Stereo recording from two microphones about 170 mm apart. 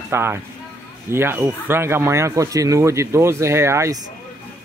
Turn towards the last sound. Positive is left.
turn(degrees=-15)  # may be behind; listen again after turning